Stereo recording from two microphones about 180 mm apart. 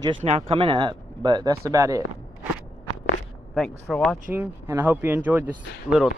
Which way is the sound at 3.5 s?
Centre (ahead or behind).